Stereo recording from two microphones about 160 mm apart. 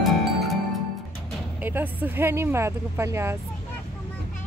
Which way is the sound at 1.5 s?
10° right (ahead or behind).